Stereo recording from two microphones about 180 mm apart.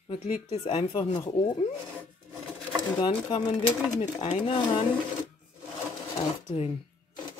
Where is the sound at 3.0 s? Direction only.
25° left (ahead or behind).